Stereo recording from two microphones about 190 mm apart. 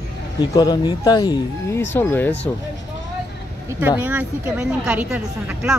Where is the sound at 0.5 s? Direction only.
20° left (ahead or behind).